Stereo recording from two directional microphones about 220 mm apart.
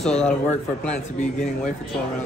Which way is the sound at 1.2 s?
35° left (ahead or behind).